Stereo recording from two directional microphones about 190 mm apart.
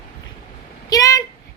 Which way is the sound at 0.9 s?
20° left (ahead or behind).